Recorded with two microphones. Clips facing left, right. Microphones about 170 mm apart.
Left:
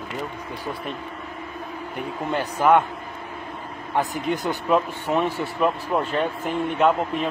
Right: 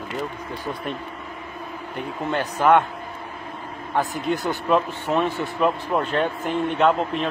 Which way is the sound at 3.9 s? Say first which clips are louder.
Even; 20° left (ahead or behind).